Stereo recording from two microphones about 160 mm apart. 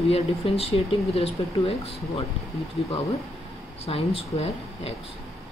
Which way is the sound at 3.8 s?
40° left (ahead or behind).